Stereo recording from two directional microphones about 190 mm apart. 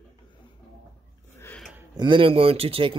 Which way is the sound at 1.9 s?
25° right (ahead or behind).